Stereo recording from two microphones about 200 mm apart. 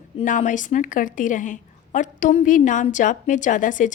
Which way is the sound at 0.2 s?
40° left (ahead or behind).